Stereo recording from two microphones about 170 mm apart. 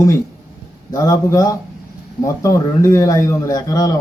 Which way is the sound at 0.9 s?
20° left (ahead or behind).